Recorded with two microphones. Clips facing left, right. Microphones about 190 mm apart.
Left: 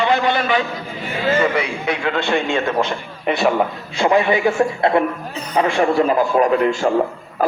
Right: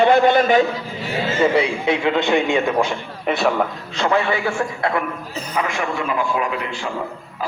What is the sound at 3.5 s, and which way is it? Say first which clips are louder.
A man's voice: left 2 dB; 15° left (ahead or behind).